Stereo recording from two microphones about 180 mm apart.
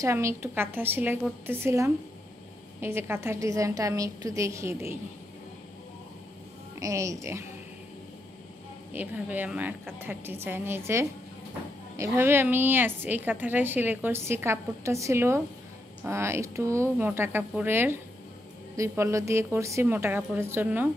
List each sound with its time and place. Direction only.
0.0 s a woman's voice: 15° right (ahead or behind)
6.7 s speech: 15° right (ahead or behind)
8.9 s a woman's voice: 10° right (ahead or behind)